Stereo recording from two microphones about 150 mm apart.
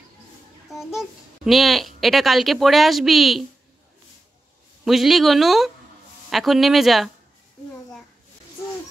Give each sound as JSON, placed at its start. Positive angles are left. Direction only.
{"t": 0.7, "sound": "a child's voice", "side_deg": 0}
{"t": 4.8, "sound": "a child's voice", "side_deg": 0}